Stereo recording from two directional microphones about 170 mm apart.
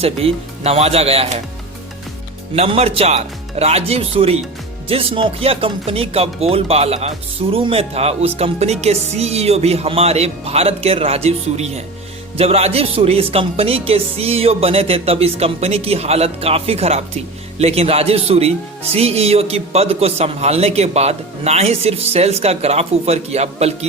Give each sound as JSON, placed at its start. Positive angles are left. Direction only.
{"t": 0.0, "sound": "a man's voice", "side_deg": -35}
{"t": 2.6, "sound": "a man's voice", "side_deg": -35}